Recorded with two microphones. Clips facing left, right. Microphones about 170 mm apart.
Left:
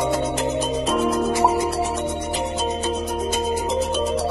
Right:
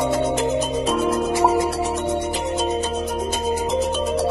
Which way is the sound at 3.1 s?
Centre (ahead or behind).